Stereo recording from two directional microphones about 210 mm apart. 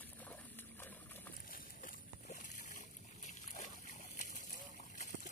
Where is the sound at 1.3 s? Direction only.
45° left (ahead or behind).